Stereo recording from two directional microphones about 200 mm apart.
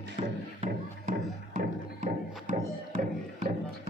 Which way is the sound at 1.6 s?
40° right (ahead or behind).